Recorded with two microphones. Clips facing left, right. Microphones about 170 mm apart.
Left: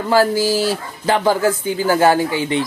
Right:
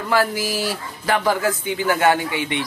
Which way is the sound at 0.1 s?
30° left (ahead or behind).